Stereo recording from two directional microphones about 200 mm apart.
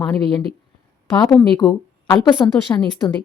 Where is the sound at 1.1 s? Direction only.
20° left (ahead or behind).